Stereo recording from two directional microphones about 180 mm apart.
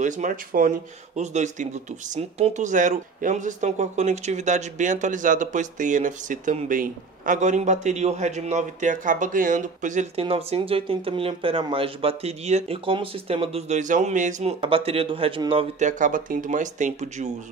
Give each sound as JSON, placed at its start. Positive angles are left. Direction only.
{"t": 0.0, "sound": "speech", "side_deg": -45}
{"t": 10.2, "sound": "speech", "side_deg": -30}
{"t": 15.8, "sound": "speech", "side_deg": -45}